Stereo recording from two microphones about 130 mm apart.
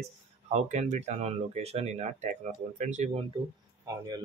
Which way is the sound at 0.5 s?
60° right (ahead or behind).